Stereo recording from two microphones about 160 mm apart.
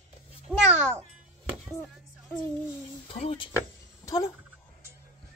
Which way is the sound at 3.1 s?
35° left (ahead or behind).